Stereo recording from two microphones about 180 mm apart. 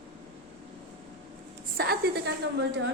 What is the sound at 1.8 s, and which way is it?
Speech, 60° right (ahead or behind).